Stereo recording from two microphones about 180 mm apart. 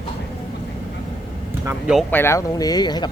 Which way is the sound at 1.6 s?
15° right (ahead or behind).